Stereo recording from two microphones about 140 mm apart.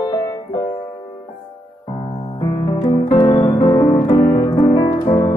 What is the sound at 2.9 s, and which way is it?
Music, 30° left (ahead or behind).